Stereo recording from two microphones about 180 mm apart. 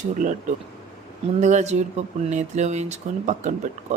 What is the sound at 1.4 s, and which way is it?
Speech, 40° right (ahead or behind).